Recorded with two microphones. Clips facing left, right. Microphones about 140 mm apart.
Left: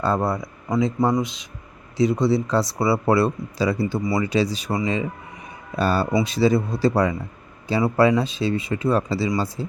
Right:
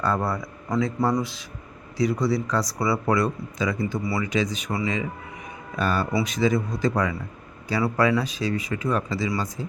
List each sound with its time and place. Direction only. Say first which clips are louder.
0.0 s speech: left 3 dB; 25° left (ahead or behind)